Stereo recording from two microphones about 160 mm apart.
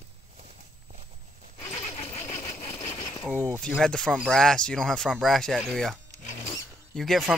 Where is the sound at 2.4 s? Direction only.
15° left (ahead or behind).